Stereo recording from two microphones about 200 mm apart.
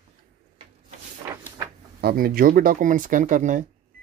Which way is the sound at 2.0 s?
50° right (ahead or behind).